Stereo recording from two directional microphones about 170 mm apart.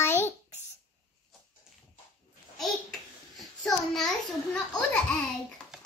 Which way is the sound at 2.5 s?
Centre (ahead or behind).